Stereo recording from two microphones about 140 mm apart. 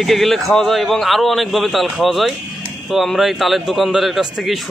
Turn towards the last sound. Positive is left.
turn(degrees=0)  # may be behind; listen again after turning